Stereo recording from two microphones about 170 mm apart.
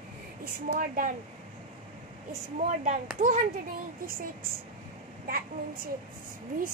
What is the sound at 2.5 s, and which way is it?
Speech, 45° right (ahead or behind).